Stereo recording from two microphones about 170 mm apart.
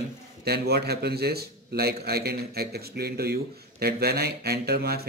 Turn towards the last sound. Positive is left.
turn(degrees=-65)  # may be behind; listen again after turning